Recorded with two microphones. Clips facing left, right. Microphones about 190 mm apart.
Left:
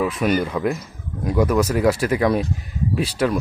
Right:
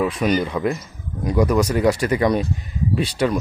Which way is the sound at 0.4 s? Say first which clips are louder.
Even; centre (ahead or behind).